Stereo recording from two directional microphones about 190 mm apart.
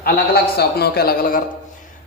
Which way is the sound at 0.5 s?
55° left (ahead or behind).